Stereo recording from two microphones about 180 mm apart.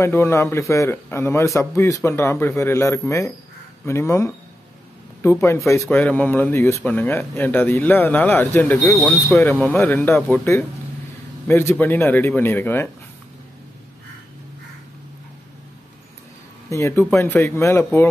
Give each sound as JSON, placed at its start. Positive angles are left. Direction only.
{"t": 0.0, "sound": "speech", "side_deg": 15}
{"t": 16.6, "sound": "speech", "side_deg": 15}